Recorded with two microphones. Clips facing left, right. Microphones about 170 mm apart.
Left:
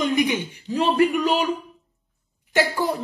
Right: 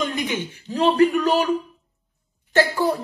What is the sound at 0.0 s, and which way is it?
A man's voice, 15° left (ahead or behind).